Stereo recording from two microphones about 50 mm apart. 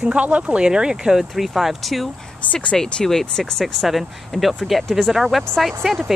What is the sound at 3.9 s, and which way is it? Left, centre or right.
Speech, centre.